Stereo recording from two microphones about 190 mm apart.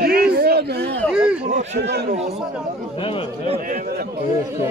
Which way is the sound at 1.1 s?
5° right (ahead or behind).